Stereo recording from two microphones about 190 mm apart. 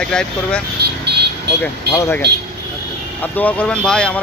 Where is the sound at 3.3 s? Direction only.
5° left (ahead or behind).